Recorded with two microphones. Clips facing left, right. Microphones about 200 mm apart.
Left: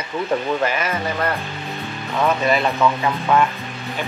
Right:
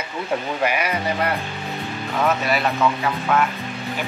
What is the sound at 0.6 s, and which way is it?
Speech, 15° right (ahead or behind).